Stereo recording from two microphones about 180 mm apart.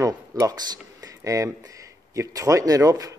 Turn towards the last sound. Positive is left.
turn(degrees=-20)  # may be behind; listen again after turning